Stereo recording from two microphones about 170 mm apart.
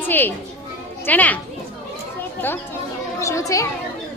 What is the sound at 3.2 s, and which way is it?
Children playing, 20° left (ahead or behind).